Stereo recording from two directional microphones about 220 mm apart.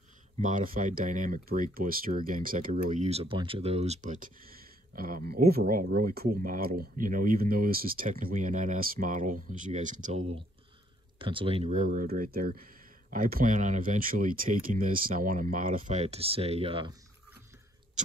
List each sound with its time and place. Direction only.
0.4 s speech: 35° right (ahead or behind)